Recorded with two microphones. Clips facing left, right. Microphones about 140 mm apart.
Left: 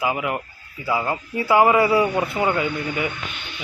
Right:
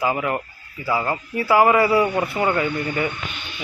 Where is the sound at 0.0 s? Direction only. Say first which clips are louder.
Right 1 dB; 15° left (ahead or behind).